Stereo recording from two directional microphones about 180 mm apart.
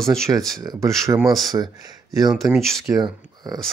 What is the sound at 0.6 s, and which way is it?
Speech, 20° right (ahead or behind).